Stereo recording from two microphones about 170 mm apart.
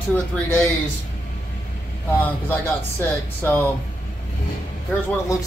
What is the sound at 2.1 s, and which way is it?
Speech, 10° left (ahead or behind).